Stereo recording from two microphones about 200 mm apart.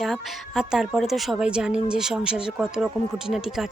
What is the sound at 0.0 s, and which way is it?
Speech, centre (ahead or behind).